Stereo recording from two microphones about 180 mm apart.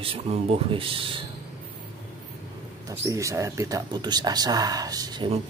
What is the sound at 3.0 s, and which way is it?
Speech, 15° right (ahead or behind).